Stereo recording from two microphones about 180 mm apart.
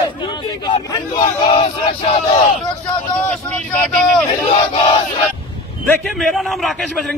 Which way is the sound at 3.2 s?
10° left (ahead or behind).